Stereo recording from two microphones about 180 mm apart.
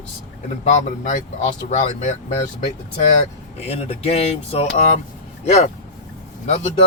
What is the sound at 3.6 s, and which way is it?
Speech, 35° left (ahead or behind).